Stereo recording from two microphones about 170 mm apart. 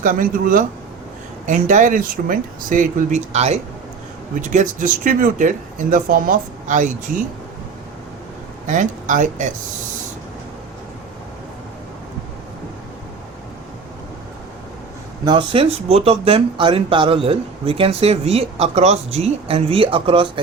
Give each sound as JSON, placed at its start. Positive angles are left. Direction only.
{"t": 0.0, "sound": "speech", "side_deg": -55}
{"t": 8.6, "sound": "speech", "side_deg": -45}
{"t": 15.2, "sound": "speech", "side_deg": -25}